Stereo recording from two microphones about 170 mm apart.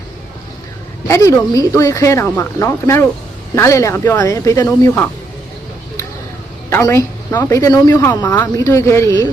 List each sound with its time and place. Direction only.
1.0 s speech: 15° left (ahead or behind)
6.7 s speech: 15° left (ahead or behind)
8.3 s speech: 10° left (ahead or behind)